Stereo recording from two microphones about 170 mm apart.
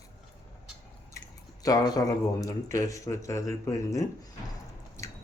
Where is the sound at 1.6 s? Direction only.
20° left (ahead or behind).